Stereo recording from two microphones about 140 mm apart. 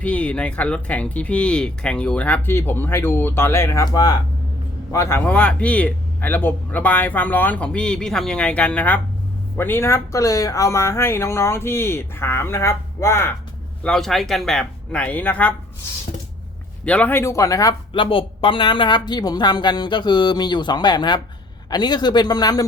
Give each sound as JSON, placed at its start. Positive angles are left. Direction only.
{"t": 0.0, "sound": "speech", "side_deg": 10}
{"t": 13.8, "sound": "speech", "side_deg": 5}
{"t": 16.8, "sound": "speech", "side_deg": 10}
{"t": 17.9, "sound": "speech", "side_deg": 40}